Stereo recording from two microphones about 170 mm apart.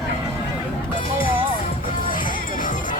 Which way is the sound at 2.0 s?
55° left (ahead or behind).